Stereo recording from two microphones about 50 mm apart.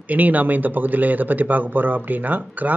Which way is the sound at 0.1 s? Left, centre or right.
Right.